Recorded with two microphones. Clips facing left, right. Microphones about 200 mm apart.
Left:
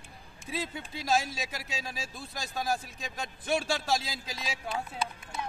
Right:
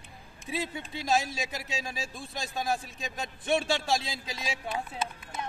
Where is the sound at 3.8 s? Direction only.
Centre (ahead or behind).